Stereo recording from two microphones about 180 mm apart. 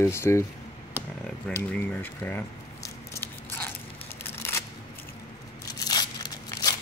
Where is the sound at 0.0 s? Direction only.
15° left (ahead or behind).